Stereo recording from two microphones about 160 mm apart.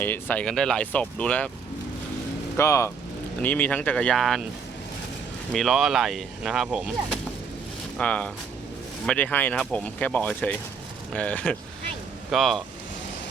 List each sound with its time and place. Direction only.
0.0 s speech: 10° left (ahead or behind)
2.6 s speech: 15° left (ahead or behind); by 4.4 s centre (ahead or behind)
5.5 s speech: centre (ahead or behind)
7.9 s speech: 5° left (ahead or behind)